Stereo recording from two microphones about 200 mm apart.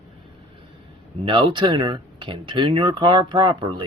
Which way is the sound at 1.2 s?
25° right (ahead or behind).